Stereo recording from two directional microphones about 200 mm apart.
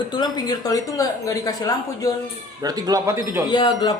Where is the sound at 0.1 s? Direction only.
20° left (ahead or behind).